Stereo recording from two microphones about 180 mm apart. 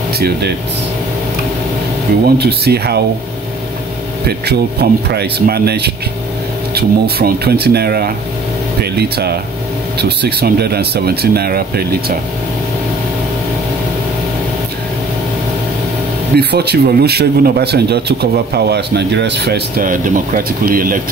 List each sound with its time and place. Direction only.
2.2 s speech: 65° right (ahead or behind)
4.3 s speech: 65° right (ahead or behind)
16.3 s speech: 65° right (ahead or behind)